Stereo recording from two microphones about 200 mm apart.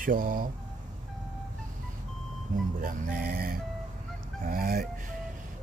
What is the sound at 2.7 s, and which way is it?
Speech, 40° right (ahead or behind).